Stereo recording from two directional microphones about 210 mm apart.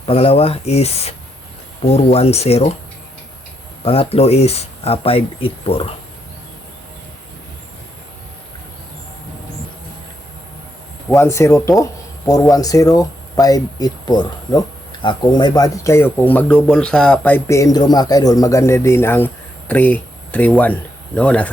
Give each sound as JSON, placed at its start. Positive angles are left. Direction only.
{"t": 0.0, "sound": "speech", "side_deg": 30}
{"t": 3.8, "sound": "speech", "side_deg": 30}
{"t": 11.1, "sound": "speech", "side_deg": 15}